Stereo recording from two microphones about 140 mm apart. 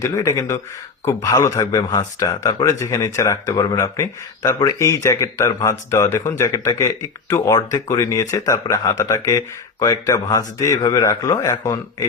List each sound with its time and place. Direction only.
0.0 s speech: 20° left (ahead or behind)